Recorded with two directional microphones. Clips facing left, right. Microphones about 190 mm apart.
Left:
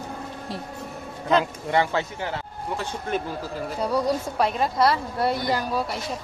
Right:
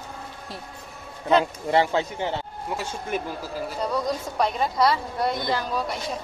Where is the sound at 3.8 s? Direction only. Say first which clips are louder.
Left 3 dB; 10° left (ahead or behind).